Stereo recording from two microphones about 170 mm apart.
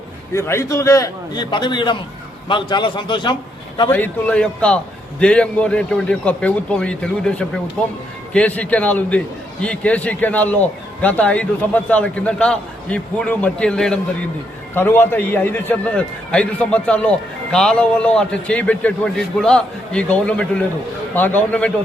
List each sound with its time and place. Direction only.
0.3 s a man's voice: 15° left (ahead or behind)
3.8 s a man's voice: 10° left (ahead or behind)